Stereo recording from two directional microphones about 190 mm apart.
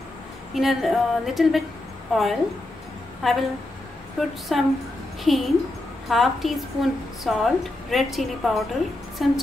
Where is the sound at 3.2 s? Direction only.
Centre (ahead or behind).